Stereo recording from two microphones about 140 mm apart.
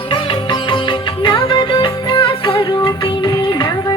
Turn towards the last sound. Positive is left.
turn(degrees=30)  # may be behind; listen again after turning